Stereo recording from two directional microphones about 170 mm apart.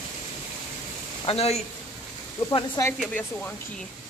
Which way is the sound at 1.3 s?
35° left (ahead or behind).